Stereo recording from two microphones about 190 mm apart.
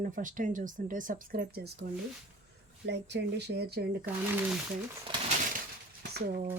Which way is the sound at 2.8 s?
65° right (ahead or behind).